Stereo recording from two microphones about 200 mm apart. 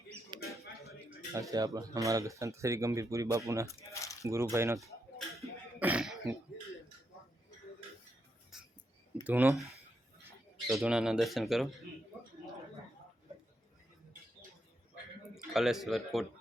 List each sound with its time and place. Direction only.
0.3 s mouse: 25° right (ahead or behind)
0.9 s speech: 15° right (ahead or behind)
3.7 s squish: 15° left (ahead or behind)
4.2 s speech: 15° right (ahead or behind)
5.4 s cough: 10° right (ahead or behind)
8.5 s a sound: centre (ahead or behind)
9.2 s speech: 10° right (ahead or behind)
15.5 s speech: centre (ahead or behind)